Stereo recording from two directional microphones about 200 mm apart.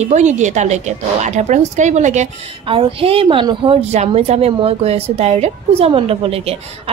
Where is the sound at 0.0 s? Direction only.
35° right (ahead or behind).